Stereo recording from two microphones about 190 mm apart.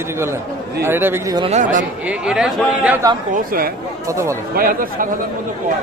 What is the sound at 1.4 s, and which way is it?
Speech, 35° right (ahead or behind).